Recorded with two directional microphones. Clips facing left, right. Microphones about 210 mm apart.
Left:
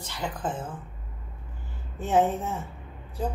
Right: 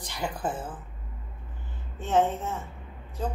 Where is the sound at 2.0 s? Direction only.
10° left (ahead or behind).